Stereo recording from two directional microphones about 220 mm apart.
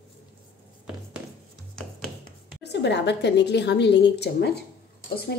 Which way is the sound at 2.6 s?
50° left (ahead or behind).